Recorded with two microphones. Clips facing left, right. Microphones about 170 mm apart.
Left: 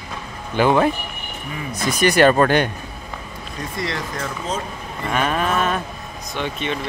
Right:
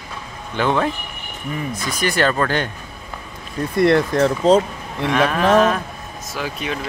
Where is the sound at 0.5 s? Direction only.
5° left (ahead or behind).